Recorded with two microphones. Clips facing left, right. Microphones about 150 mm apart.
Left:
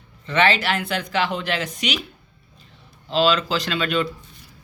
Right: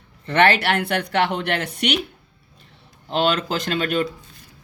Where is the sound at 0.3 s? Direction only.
65° right (ahead or behind).